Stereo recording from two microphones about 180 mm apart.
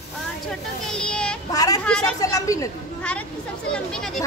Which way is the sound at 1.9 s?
5° left (ahead or behind).